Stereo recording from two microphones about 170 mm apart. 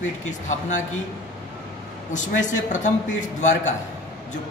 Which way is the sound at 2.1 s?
45° left (ahead or behind).